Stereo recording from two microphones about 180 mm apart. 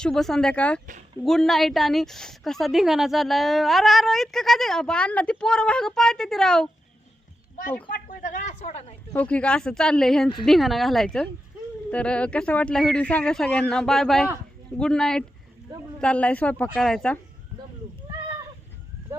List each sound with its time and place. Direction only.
0.0 s speech: 5° left (ahead or behind)
8.0 s a woman's voice: 45° left (ahead or behind)
9.1 s speech: 5° left (ahead or behind)